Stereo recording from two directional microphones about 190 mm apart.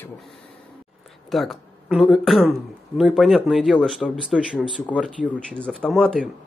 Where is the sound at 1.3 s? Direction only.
Centre (ahead or behind).